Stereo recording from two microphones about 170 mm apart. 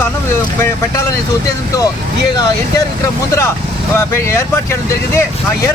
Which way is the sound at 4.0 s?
15° left (ahead or behind).